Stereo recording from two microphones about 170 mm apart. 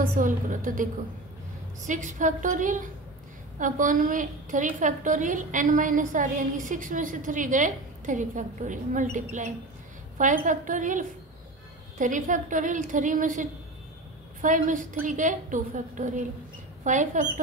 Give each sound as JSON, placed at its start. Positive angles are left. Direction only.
{"t": 0.0, "sound": "a woman's voice", "side_deg": -50}